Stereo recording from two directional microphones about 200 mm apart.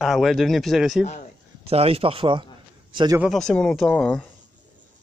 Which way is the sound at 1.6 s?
30° right (ahead or behind).